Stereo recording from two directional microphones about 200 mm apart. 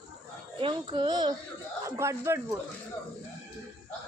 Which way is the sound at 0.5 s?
25° right (ahead or behind).